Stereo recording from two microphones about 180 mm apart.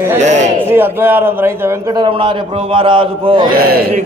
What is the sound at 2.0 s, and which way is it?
A man's voice, 30° right (ahead or behind).